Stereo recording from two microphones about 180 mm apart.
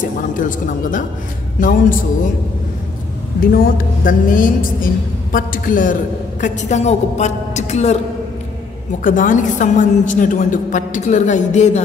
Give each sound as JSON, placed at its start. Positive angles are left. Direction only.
{"t": 0.0, "sound": "a woman's voice", "side_deg": 45}
{"t": 3.5, "sound": "a woman's voice", "side_deg": 50}
{"t": 9.0, "sound": "a woman's voice", "side_deg": 45}